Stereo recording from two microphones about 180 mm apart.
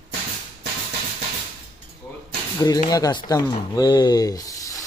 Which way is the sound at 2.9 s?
20° left (ahead or behind).